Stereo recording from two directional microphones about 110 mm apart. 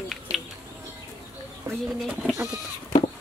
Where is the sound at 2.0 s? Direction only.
5° right (ahead or behind).